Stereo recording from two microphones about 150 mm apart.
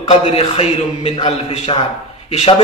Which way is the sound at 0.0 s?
40° left (ahead or behind).